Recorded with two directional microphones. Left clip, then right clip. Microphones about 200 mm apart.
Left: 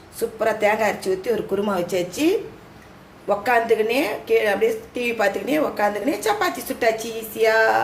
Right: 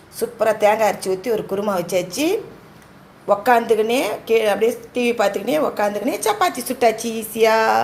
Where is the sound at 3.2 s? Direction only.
15° right (ahead or behind).